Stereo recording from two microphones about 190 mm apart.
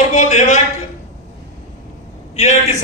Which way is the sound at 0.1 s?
40° left (ahead or behind).